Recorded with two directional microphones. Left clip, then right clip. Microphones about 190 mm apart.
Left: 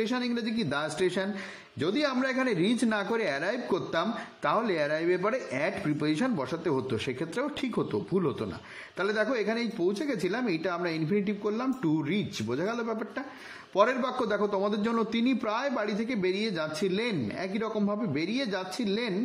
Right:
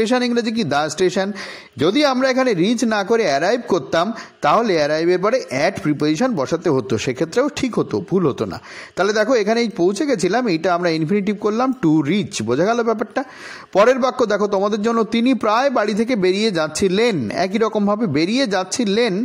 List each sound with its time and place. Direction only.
0.0 s a man's voice: 40° right (ahead or behind)